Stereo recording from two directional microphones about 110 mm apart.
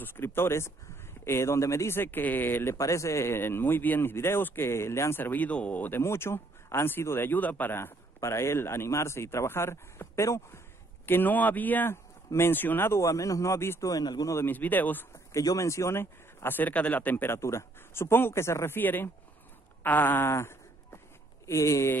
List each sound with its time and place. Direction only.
0.0 s speech: 20° left (ahead or behind); by 14.3 s 35° left (ahead or behind)
14.3 s a man's voice: 20° left (ahead or behind)
15.3 s speech: 30° left (ahead or behind)
19.8 s fart: 15° left (ahead or behind)
21.5 s speech: 30° left (ahead or behind)